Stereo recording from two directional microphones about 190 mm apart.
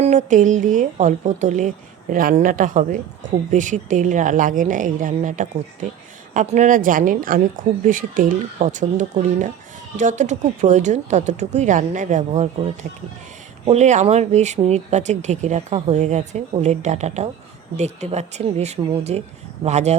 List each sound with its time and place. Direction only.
0.0 s a woman's voice: 40° right (ahead or behind)